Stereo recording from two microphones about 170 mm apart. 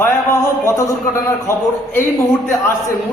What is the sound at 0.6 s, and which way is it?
A man's voice, 15° left (ahead or behind).